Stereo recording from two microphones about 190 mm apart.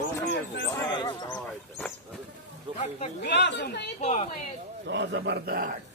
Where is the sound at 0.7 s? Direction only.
20° left (ahead or behind).